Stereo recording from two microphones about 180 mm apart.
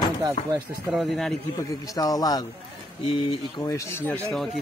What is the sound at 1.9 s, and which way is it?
A man's voice, 20° left (ahead or behind).